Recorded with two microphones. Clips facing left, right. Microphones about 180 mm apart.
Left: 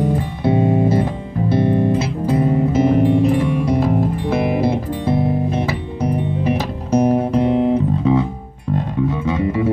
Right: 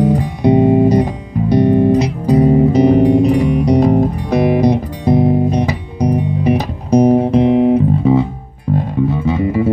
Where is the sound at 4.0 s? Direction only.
15° right (ahead or behind).